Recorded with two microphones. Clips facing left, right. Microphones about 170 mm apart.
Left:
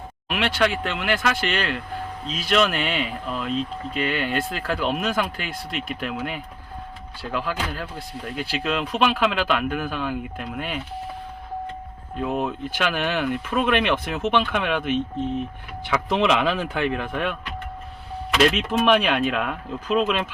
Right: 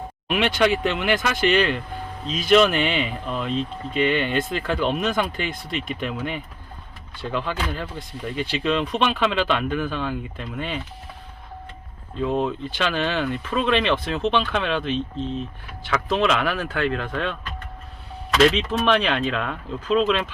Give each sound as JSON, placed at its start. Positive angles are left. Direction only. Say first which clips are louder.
{"t": 0.3, "sound": "speech", "louder": "right 3 dB", "side_deg": 0}
{"t": 12.2, "sound": "speech", "louder": "right 2 dB", "side_deg": 5}
{"t": 18.5, "sound": "speech", "louder": "left 1 dB", "side_deg": 10}